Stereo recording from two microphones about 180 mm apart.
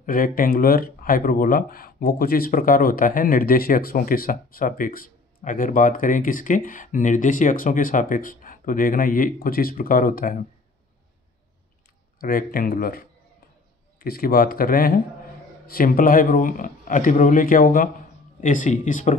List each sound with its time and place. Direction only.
0.0 s speech: 50° left (ahead or behind)
12.2 s speech: 55° left (ahead or behind)